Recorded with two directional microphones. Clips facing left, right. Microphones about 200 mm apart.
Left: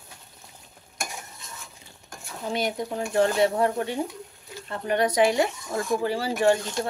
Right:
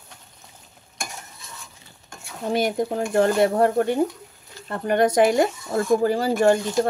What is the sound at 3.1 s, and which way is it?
Speech, 50° right (ahead or behind).